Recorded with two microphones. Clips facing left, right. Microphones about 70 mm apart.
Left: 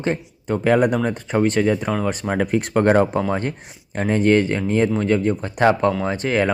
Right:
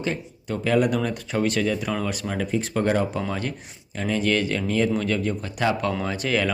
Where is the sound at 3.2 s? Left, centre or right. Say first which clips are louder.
Left 6 dB; left.